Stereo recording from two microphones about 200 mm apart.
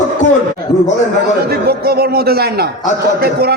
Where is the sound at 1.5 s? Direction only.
50° right (ahead or behind).